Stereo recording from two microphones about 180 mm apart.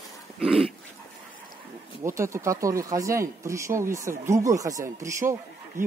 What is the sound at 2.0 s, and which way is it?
Speech, 15° right (ahead or behind).